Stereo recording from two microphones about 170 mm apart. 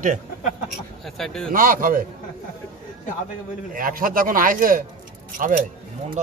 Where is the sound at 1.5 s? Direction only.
55° right (ahead or behind).